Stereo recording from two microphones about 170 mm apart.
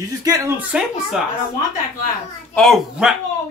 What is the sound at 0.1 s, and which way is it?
Speech, 20° right (ahead or behind).